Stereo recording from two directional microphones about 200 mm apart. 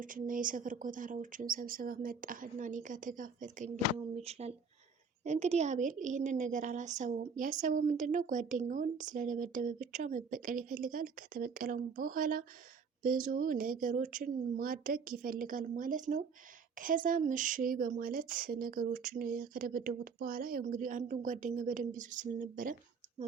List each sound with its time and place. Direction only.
0.0 s a woman's voice: 40° right (ahead or behind)